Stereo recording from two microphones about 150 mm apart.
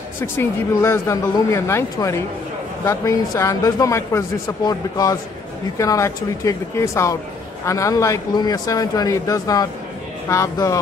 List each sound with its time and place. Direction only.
0.2 s speech: 15° left (ahead or behind)